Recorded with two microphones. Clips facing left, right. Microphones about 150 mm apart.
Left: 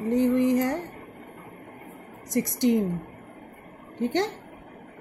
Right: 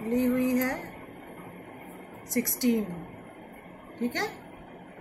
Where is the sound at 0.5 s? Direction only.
20° left (ahead or behind).